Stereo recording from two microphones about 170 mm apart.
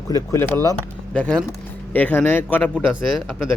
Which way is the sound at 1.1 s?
10° left (ahead or behind).